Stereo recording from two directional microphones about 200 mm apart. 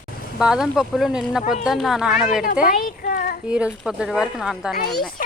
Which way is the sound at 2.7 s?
45° left (ahead or behind).